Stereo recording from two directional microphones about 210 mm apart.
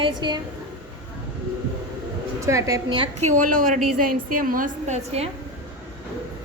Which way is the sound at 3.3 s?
40° right (ahead or behind).